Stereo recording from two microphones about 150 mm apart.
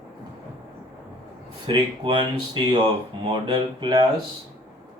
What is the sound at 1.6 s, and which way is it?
Speech, 30° right (ahead or behind).